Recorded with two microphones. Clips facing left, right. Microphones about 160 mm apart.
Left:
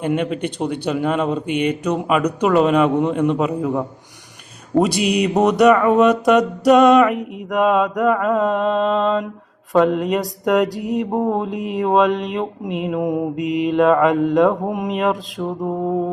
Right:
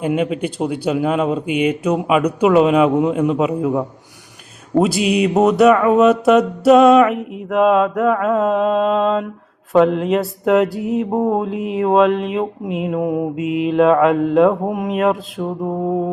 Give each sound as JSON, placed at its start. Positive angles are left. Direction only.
{"t": 0.0, "sound": "mantra", "side_deg": -5}